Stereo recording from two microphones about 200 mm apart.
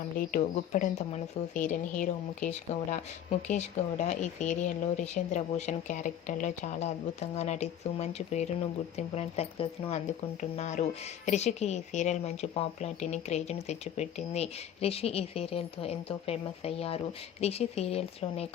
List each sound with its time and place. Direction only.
0.2 s a woman's voice: 40° left (ahead or behind)